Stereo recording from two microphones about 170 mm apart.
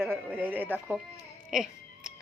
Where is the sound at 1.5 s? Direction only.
5° right (ahead or behind).